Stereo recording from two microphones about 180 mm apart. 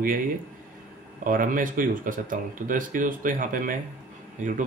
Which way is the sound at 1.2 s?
50° right (ahead or behind).